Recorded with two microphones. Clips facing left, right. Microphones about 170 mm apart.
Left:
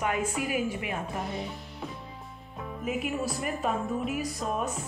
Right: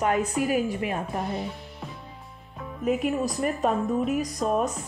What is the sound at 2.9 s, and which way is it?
Speech, 40° right (ahead or behind).